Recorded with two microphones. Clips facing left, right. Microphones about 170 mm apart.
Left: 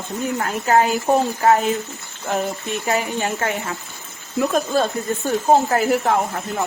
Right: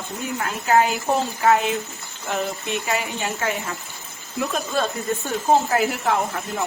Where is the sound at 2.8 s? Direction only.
40° left (ahead or behind).